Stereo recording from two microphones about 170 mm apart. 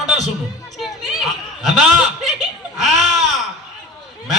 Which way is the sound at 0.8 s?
Centre (ahead or behind).